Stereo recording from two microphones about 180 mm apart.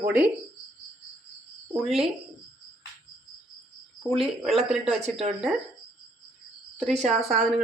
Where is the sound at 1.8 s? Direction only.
Centre (ahead or behind).